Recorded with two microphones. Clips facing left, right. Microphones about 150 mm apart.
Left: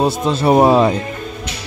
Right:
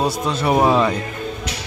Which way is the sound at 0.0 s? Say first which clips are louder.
Left 4 dB; 30° left (ahead or behind).